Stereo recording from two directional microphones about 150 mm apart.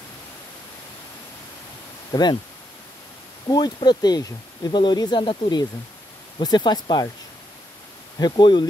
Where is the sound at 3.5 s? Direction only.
30° left (ahead or behind).